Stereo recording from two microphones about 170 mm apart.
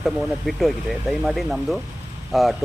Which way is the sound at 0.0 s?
Centre (ahead or behind).